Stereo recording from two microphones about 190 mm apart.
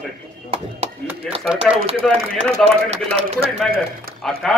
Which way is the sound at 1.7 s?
30° right (ahead or behind).